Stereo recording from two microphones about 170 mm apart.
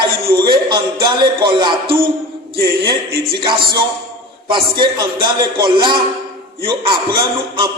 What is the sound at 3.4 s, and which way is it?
Speech, 25° right (ahead or behind).